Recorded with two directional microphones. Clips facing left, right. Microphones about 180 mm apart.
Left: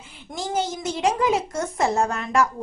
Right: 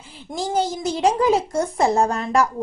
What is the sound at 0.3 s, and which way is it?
A child's voice, 35° right (ahead or behind).